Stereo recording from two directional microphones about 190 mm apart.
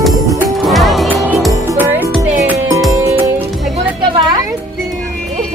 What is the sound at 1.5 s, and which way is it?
Music, 15° right (ahead or behind).